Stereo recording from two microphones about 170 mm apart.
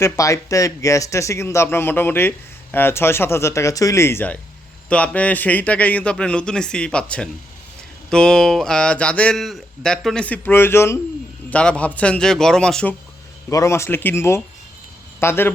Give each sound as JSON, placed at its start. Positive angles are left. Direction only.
{"t": 0.0, "sound": "a man's voice", "side_deg": 20}
{"t": 13.5, "sound": "a man's voice", "side_deg": 20}